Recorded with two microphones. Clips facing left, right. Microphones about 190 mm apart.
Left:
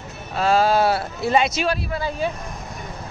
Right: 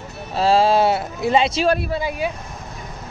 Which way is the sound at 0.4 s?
30° right (ahead or behind).